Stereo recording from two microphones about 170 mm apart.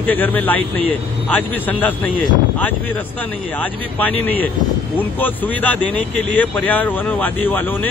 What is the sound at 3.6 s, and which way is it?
Speech, 10° left (ahead or behind).